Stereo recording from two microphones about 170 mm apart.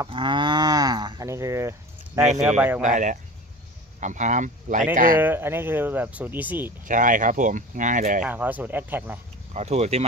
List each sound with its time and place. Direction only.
0.1 s cattle: 30° right (ahead or behind)
2.4 s speech: 10° right (ahead or behind)
2.8 s speech: 50° right (ahead or behind)
5.2 s speech: 10° right (ahead or behind)
6.8 s speech: 50° right (ahead or behind)
8.2 s speech: 10° right (ahead or behind)
9.5 s speech: 40° right (ahead or behind)